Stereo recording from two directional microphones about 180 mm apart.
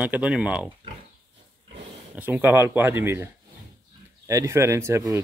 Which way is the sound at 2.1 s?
10° right (ahead or behind).